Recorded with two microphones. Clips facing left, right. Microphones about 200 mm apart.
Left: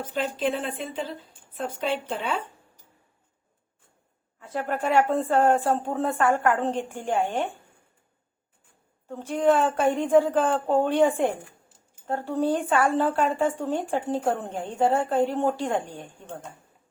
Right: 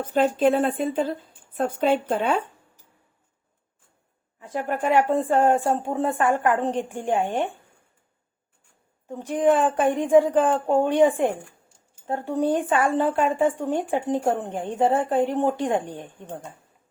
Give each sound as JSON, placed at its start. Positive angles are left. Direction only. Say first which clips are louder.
{"t": 0.0, "sound": "speech", "louder": "right 7 dB", "side_deg": -50}
{"t": 4.4, "sound": "speech", "louder": "right 2 dB", "side_deg": -15}
{"t": 9.0, "sound": "speech", "louder": "right 2 dB", "side_deg": -15}